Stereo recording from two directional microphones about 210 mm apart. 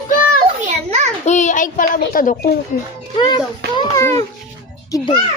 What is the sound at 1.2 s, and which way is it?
A child's voice, 35° left (ahead or behind).